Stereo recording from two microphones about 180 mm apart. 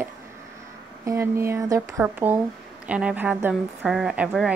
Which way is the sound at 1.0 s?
15° right (ahead or behind).